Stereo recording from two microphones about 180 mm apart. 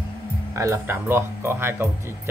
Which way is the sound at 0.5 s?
15° right (ahead or behind).